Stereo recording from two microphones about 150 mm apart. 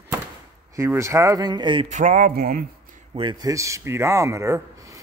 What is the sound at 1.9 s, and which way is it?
Speech, 60° right (ahead or behind).